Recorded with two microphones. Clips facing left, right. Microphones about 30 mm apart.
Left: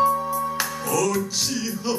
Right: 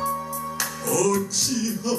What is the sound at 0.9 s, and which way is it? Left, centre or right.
Music, centre.